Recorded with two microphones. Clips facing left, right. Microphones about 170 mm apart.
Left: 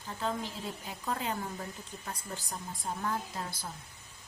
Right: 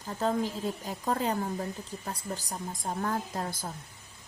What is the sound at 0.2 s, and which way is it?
A woman's voice, 40° right (ahead or behind).